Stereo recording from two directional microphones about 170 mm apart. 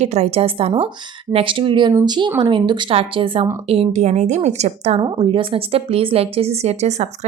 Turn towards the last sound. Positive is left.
turn(degrees=-40)  # may be behind; listen again after turning